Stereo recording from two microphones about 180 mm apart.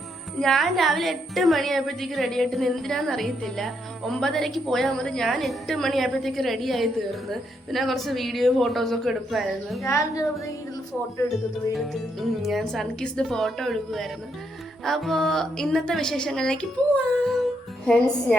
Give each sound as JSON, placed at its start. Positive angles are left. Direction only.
{"t": 0.3, "sound": "a woman's voice", "side_deg": 5}
{"t": 9.8, "sound": "a woman's voice", "side_deg": 15}
{"t": 11.3, "sound": "a woman's voice", "side_deg": 0}
{"t": 17.8, "sound": "a woman's voice", "side_deg": 5}